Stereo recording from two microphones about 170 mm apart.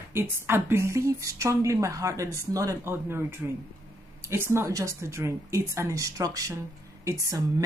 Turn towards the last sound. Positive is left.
turn(degrees=-20)  # may be behind; listen again after turning